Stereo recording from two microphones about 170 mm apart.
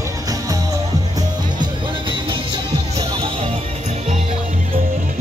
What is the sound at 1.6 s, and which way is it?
Music, 30° right (ahead or behind).